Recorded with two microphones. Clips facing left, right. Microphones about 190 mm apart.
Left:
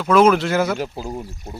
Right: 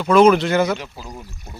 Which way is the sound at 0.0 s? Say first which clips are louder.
Right 2 dB; 5° left (ahead or behind).